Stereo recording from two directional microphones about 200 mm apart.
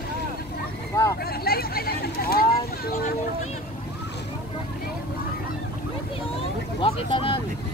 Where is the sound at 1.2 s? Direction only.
50° left (ahead or behind).